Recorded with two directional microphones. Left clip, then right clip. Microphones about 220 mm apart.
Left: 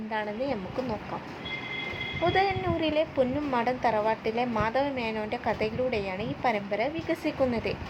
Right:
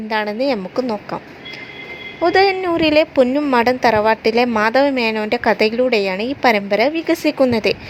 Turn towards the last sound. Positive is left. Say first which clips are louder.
# right 12 dB
turn(degrees=-45)  # may be behind; listen again after turning